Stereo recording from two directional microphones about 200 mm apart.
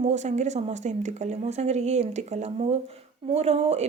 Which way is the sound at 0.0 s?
35° right (ahead or behind).